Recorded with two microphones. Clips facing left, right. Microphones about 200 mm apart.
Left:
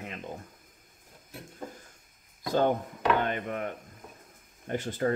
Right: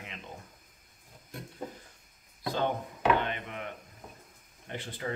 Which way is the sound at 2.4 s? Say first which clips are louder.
Left 5 dB; 45° left (ahead or behind).